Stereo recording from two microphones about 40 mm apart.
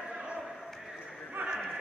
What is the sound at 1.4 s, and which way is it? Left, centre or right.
Clip-clop, right.